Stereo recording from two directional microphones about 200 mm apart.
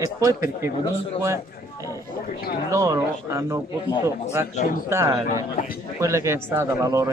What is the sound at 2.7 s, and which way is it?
Speech, 15° right (ahead or behind).